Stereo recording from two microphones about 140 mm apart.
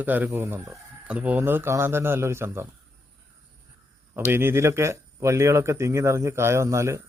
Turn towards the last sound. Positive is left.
turn(degrees=-20)  # may be behind; listen again after turning